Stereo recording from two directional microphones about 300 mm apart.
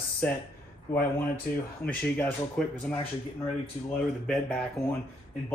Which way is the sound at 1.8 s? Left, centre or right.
Centre.